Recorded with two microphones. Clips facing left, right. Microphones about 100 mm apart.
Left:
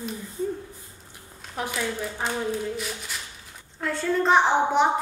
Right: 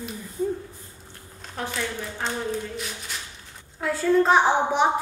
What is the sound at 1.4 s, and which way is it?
A child's voice, 10° left (ahead or behind).